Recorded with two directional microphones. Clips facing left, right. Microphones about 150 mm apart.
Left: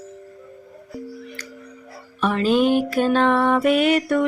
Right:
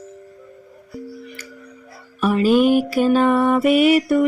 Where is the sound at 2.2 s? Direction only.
5° right (ahead or behind).